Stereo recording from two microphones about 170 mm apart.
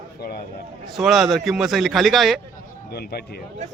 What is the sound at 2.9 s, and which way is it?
Speech, 70° left (ahead or behind).